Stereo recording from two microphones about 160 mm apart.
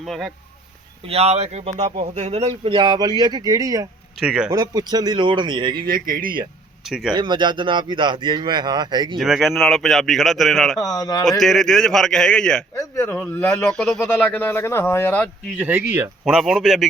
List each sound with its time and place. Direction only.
0.0 s speech: centre (ahead or behind)
1.0 s speech: 40° right (ahead or behind)
2.7 s speech: 25° right (ahead or behind)
4.2 s speech: 5° right (ahead or behind)
4.4 s speech: 25° right (ahead or behind)
5.8 s speech: 65° right (ahead or behind)
6.8 s speech: centre (ahead or behind)
7.1 s speech: 30° right (ahead or behind)
9.1 s speech: centre (ahead or behind)
10.8 s speech: 20° left (ahead or behind)
11.3 s speech: centre (ahead or behind)
12.7 s speech: 20° left (ahead or behind)
13.7 s speech: 5° left (ahead or behind)
15.5 s speech: 10° right (ahead or behind)